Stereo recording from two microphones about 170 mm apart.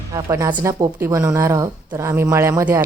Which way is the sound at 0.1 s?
20° right (ahead or behind).